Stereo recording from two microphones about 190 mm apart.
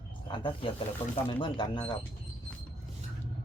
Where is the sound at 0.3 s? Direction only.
25° left (ahead or behind).